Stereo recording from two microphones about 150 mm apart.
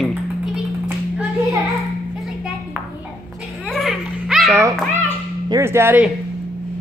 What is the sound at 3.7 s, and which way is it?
Laughter, centre (ahead or behind).